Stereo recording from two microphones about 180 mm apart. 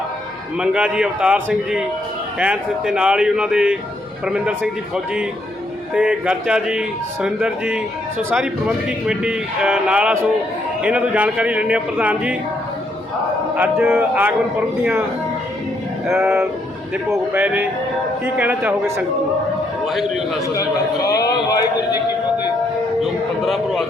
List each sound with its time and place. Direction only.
0.6 s speech: 5° right (ahead or behind)
2.4 s speech: 5° right (ahead or behind)
5.9 s a man's voice: 5° right (ahead or behind)
13.6 s a man's voice: 10° right (ahead or behind)
16.0 s a man's voice: 15° right (ahead or behind)
20.6 s a man's voice: 20° left (ahead or behind)
23.0 s speech: centre (ahead or behind)